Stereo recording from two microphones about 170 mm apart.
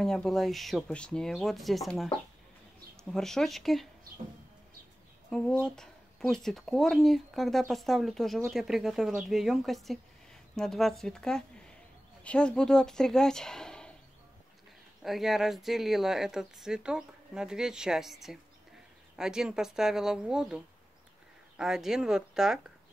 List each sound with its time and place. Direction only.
0.0 s speech: 5° left (ahead or behind)
5.3 s speech: 5° left (ahead or behind)
15.0 s speech: centre (ahead or behind)